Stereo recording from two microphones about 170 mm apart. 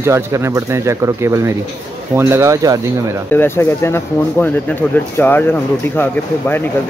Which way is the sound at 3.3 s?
15° left (ahead or behind).